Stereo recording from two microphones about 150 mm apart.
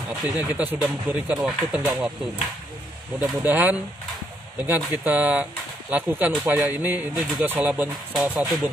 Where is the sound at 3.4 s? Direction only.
10° right (ahead or behind).